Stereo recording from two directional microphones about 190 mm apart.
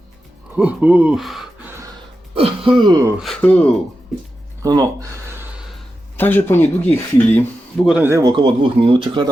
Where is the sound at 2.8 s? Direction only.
20° right (ahead or behind).